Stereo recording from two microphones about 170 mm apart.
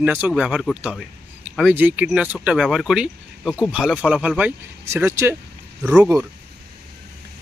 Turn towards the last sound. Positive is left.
turn(degrees=-5)  # may be behind; listen again after turning